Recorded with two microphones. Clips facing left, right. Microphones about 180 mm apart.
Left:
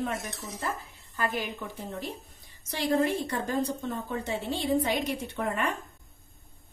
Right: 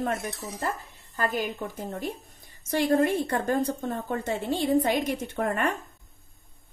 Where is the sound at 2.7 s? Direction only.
50° right (ahead or behind).